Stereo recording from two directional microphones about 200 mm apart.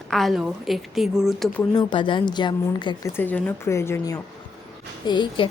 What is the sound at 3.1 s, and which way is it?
A woman's voice, 10° left (ahead or behind).